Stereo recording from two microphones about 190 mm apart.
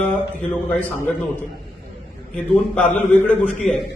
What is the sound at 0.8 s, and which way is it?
A man's voice, 10° left (ahead or behind).